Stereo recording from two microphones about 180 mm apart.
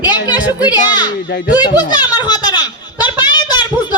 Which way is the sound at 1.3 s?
50° left (ahead or behind).